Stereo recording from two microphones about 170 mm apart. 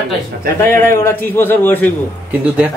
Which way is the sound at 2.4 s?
10° right (ahead or behind).